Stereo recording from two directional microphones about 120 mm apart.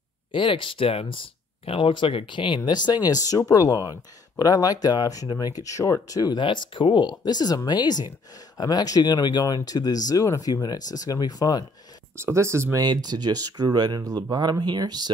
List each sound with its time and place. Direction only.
0.3 s speech: 45° left (ahead or behind)
12.2 s speech: 20° right (ahead or behind)